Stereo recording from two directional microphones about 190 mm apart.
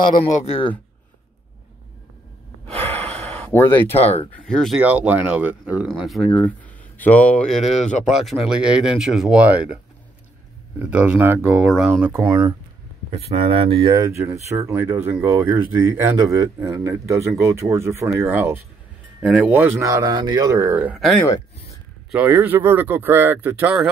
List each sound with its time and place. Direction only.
0.2 s speech: 30° left (ahead or behind)
2.8 s sigh: 10° left (ahead or behind)
4.3 s speech: 5° left (ahead or behind)
10.8 s speech: 5° right (ahead or behind)
13.1 s speech: 30° right (ahead or behind); by 23.9 s 5° right (ahead or behind)